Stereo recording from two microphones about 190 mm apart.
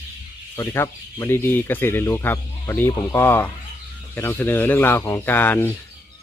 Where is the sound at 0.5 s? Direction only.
15° left (ahead or behind).